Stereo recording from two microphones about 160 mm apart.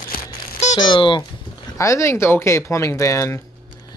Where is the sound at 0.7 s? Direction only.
30° left (ahead or behind).